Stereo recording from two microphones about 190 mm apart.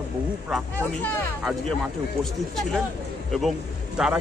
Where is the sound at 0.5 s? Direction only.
5° left (ahead or behind).